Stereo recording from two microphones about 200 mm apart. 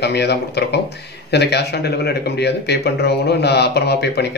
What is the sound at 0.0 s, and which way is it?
Speech, 55° left (ahead or behind).